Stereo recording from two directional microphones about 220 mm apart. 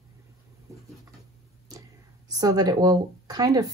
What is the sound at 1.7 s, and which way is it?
Speech, 15° right (ahead or behind).